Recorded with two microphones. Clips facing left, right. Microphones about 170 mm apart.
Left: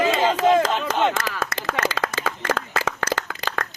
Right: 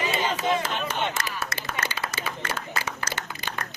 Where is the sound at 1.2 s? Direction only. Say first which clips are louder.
Left 6 dB; 90° left.